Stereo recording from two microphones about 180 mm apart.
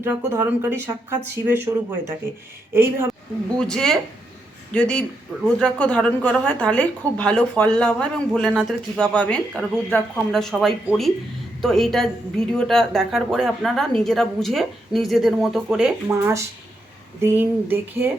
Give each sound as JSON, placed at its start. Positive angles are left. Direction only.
{"t": 0.0, "sound": "speech", "side_deg": -15}
{"t": 2.7, "sound": "speech", "side_deg": -15}
{"t": 3.6, "sound": "a woman's voice", "side_deg": 5}
{"t": 16.2, "sound": "speech", "side_deg": -15}